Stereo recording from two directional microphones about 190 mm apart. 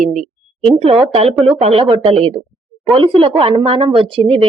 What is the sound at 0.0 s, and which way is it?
A woman's voice, 40° right (ahead or behind).